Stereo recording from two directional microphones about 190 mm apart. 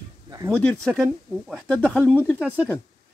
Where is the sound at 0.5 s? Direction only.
5° left (ahead or behind).